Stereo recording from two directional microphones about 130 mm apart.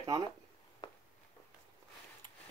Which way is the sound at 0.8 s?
35° left (ahead or behind).